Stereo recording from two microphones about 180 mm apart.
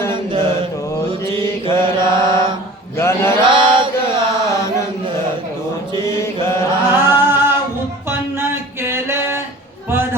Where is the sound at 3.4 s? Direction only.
25° right (ahead or behind).